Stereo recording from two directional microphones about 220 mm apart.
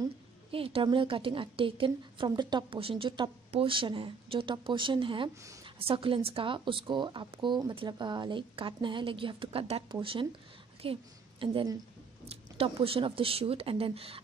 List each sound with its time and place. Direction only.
0.0 s a woman's voice: 25° right (ahead or behind)